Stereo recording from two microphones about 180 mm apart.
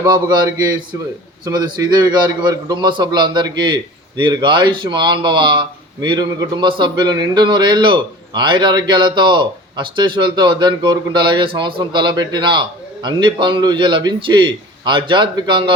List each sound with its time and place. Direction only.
0.0 s a man's voice: 20° right (ahead or behind)